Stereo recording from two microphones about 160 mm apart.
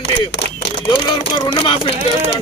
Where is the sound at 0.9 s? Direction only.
30° left (ahead or behind).